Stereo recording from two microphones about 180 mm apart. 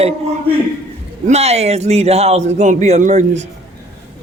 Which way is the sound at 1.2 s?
35° right (ahead or behind).